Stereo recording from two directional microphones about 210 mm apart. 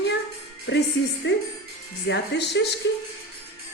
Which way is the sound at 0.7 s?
65° left (ahead or behind).